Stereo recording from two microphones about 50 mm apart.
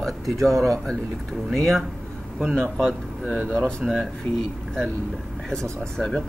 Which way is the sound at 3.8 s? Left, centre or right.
Centre.